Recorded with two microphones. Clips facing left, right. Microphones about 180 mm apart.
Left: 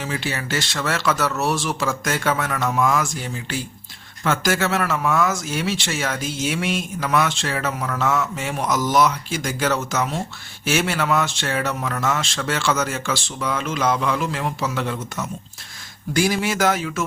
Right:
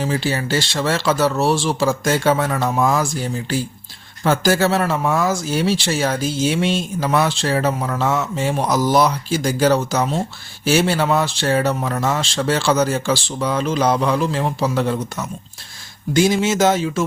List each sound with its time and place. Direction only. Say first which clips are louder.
0.0 s speech: right 6 dB; 35° right (ahead or behind)
16.1 s speech: right 5 dB; 25° right (ahead or behind)